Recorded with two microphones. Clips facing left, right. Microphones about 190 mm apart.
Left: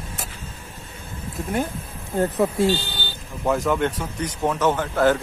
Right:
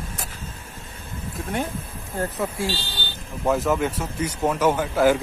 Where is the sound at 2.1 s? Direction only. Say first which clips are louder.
Left 6 dB; 20° left (ahead or behind).